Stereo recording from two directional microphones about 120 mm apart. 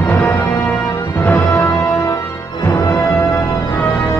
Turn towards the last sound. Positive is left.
turn(degrees=25)  # may be behind; listen again after turning